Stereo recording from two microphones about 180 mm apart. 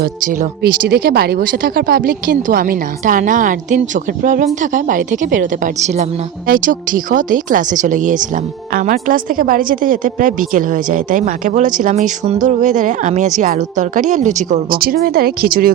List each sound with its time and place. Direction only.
0.0 s a woman's voice: 50° right (ahead or behind)